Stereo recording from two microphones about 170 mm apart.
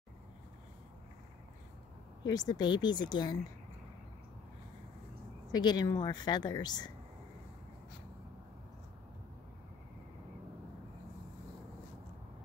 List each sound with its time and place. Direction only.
2.2 s a woman's voice: 25° left (ahead or behind)
5.5 s a woman's voice: 25° left (ahead or behind)